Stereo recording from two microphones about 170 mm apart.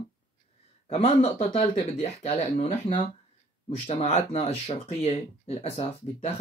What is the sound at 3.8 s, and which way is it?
Speech, 40° left (ahead or behind).